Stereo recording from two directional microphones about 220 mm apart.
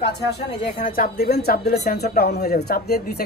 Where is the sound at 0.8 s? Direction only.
40° left (ahead or behind).